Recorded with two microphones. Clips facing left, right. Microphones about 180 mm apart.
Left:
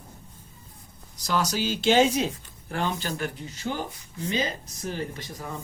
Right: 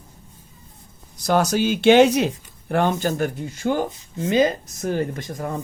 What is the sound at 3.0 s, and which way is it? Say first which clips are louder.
Speech: right 8 dB; 45° right (ahead or behind).